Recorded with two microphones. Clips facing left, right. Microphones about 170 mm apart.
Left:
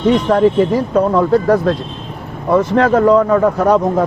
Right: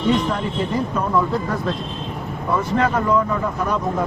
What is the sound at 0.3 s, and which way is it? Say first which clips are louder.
Speech: left 11 dB; 75° left (ahead or behind).